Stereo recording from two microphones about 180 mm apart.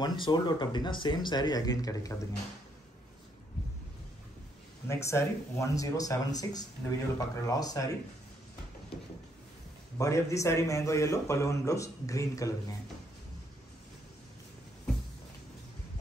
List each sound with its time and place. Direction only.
0.2 s speech: 25° left (ahead or behind)
4.8 s speech: 15° left (ahead or behind)
9.9 s a man's voice: 15° left (ahead or behind)